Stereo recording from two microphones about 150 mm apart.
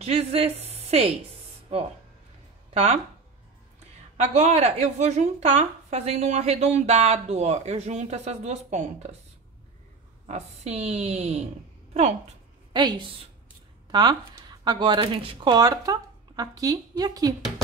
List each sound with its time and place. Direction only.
0.0 s a woman's voice: 45° right (ahead or behind)
2.7 s speech: 45° right (ahead or behind)
4.2 s a woman's voice: 50° right (ahead or behind)
10.2 s a woman's voice: 45° right (ahead or behind)
12.7 s a woman's voice: 30° right (ahead or behind)